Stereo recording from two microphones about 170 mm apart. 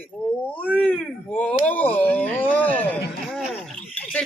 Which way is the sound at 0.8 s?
5° left (ahead or behind).